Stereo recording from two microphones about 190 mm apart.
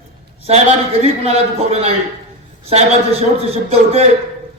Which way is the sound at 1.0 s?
35° right (ahead or behind).